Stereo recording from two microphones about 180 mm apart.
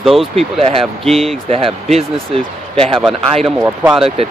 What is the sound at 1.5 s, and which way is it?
Speech, 30° right (ahead or behind).